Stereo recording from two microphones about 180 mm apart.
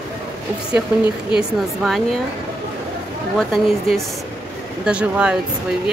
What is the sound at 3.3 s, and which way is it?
A woman's voice, centre (ahead or behind).